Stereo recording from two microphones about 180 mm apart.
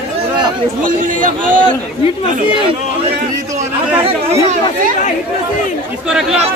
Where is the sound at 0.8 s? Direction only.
50° right (ahead or behind).